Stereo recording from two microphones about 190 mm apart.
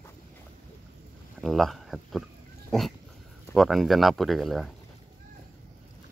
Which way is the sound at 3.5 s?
Centre (ahead or behind).